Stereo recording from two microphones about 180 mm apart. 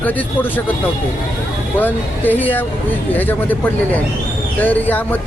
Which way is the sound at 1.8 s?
10° left (ahead or behind).